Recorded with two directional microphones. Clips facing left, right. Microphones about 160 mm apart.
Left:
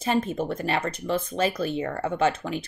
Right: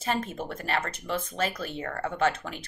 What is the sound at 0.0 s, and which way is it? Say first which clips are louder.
Speech: left 5 dB; 15° left (ahead or behind).